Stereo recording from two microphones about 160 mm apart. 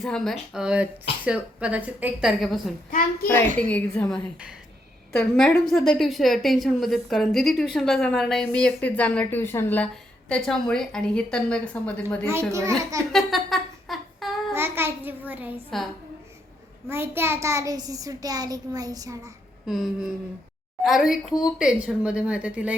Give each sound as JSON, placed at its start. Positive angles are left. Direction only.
{"t": 0.0, "sound": "a woman's voice", "side_deg": 0}
{"t": 12.5, "sound": "a child's voice", "side_deg": -20}
{"t": 13.1, "sound": "a sound", "side_deg": 0}
{"t": 14.5, "sound": "a child's voice", "side_deg": -15}
{"t": 16.9, "sound": "a child's voice", "side_deg": -15}
{"t": 19.6, "sound": "a woman's voice", "side_deg": 0}